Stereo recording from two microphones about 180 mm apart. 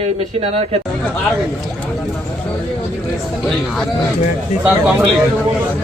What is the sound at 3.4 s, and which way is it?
Speech, 5° left (ahead or behind).